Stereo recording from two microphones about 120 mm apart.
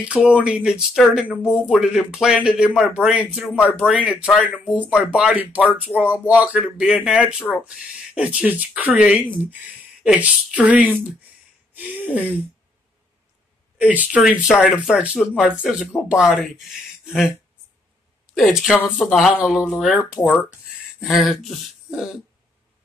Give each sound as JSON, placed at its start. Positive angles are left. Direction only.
{"t": 0.0, "sound": "speech", "side_deg": -10}
{"t": 13.7, "sound": "speech", "side_deg": -10}
{"t": 18.3, "sound": "speech", "side_deg": 0}
{"t": 20.2, "sound": "speech", "side_deg": 20}
{"t": 21.0, "sound": "speech", "side_deg": 0}